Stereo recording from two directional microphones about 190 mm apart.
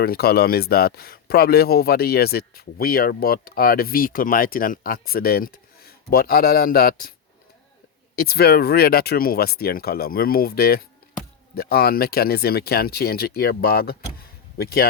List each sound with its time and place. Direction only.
0.0 s speech: 55° left (ahead or behind)
8.1 s speech: 55° left (ahead or behind)